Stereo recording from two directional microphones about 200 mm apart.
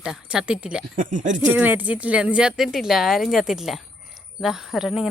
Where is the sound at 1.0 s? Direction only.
40° right (ahead or behind).